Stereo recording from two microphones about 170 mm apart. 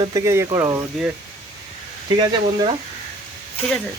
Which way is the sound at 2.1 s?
25° right (ahead or behind).